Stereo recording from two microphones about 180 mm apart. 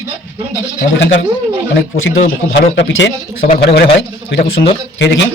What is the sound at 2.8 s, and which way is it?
Speech, 85° left.